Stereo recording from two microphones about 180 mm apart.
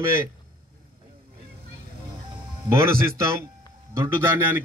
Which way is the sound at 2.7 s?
15° right (ahead or behind).